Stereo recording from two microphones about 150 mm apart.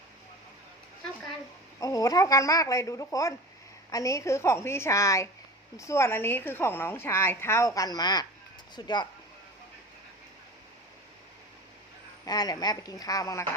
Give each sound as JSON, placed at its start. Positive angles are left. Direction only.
{"t": 1.8, "sound": "a woman's voice", "side_deg": 25}
{"t": 12.2, "sound": "speech", "side_deg": 25}